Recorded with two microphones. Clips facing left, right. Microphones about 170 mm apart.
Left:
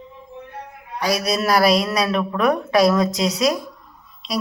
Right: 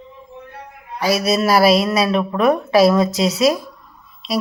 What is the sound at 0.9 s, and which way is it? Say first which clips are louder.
Speech: right 4 dB; 5° right (ahead or behind).